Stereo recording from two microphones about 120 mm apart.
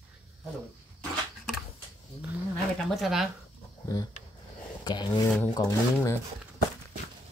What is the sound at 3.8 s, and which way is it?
Speech, 30° left (ahead or behind).